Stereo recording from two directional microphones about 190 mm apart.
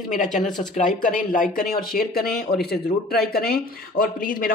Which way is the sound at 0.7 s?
40° left (ahead or behind).